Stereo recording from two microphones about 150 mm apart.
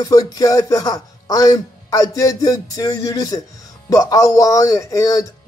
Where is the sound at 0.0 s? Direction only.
25° left (ahead or behind).